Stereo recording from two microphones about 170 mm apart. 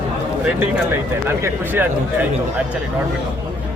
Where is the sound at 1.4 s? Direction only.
10° right (ahead or behind).